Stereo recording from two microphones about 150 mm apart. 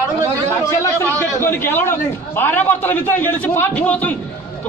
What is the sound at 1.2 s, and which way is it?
A man's voice, 15° left (ahead or behind).